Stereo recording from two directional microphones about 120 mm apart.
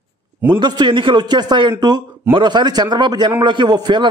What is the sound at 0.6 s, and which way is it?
A man's voice, 40° right (ahead or behind).